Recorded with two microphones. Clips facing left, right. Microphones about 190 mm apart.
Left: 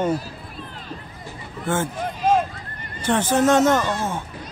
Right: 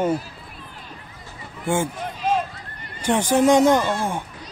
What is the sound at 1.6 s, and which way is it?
Speech, 10° right (ahead or behind).